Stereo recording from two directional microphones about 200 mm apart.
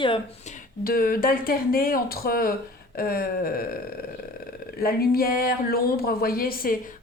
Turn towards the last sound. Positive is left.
turn(degrees=45)  # may be behind; listen again after turning